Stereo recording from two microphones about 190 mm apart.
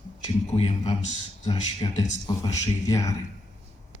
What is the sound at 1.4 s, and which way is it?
A man's voice, 25° left (ahead or behind).